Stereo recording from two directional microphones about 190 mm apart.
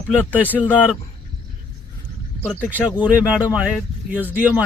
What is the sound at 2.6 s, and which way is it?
Speech, 10° right (ahead or behind).